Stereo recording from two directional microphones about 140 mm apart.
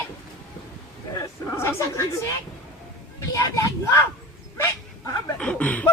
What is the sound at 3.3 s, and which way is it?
Speech, 20° left (ahead or behind).